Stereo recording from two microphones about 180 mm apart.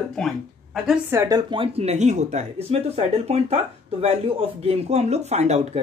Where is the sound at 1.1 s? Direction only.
20° right (ahead or behind).